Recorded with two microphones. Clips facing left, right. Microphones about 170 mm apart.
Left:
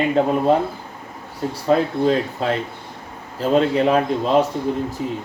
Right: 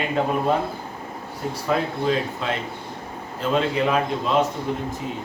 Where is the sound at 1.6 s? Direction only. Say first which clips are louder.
Left 6 dB; 40° left (ahead or behind).